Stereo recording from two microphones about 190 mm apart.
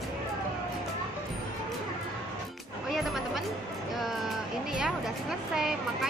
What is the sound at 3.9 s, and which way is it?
Vehicle, centre (ahead or behind).